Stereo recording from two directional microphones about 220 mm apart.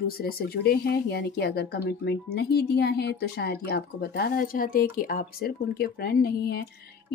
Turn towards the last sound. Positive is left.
turn(degrees=45)  # may be behind; listen again after turning